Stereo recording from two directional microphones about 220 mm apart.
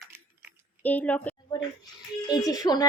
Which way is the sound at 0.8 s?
5° left (ahead or behind).